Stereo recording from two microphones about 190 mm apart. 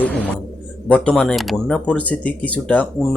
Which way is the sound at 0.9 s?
5° left (ahead or behind).